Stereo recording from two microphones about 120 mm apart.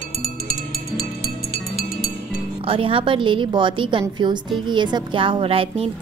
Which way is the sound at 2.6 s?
50° right (ahead or behind).